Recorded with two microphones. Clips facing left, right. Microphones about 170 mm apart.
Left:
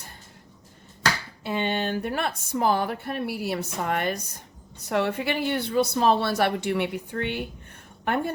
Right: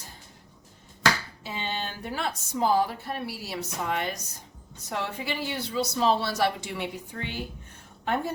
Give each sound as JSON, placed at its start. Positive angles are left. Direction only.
{"t": 1.5, "sound": "a woman's voice", "side_deg": 60}